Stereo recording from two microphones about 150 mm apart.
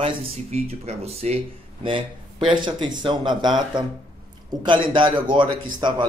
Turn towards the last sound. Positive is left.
turn(degrees=-30)  # may be behind; listen again after turning